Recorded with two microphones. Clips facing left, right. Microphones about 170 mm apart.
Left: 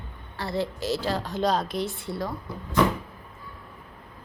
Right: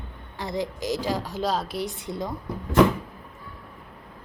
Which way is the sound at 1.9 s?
20° right (ahead or behind).